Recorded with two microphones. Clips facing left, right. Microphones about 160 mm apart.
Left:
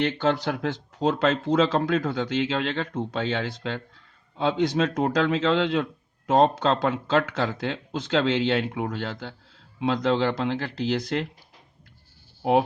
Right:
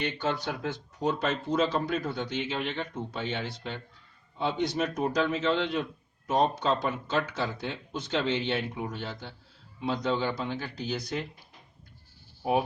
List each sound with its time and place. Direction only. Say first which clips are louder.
0.0 s a man's voice: left 7 dB; 85° left
12.4 s speech: left 6 dB; 80° left